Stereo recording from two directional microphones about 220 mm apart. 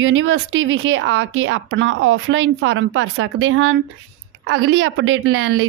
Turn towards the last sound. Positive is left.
turn(degrees=-65)  # may be behind; listen again after turning